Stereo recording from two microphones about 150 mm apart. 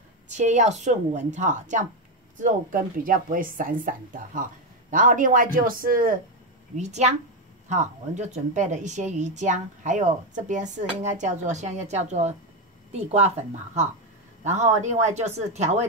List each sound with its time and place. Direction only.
0.3 s a woman's voice: 50° right (ahead or behind); by 6.1 s 70° right (ahead or behind)
6.8 s a woman's voice: 50° right (ahead or behind)
14.4 s a woman's voice: 50° right (ahead or behind)